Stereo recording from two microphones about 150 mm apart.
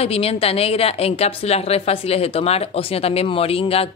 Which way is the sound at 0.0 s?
40° left (ahead or behind).